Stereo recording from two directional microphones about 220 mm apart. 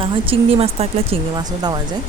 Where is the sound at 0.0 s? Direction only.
25° right (ahead or behind).